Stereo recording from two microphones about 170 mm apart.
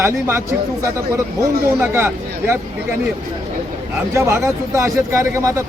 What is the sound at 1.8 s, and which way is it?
Speech, 15° right (ahead or behind).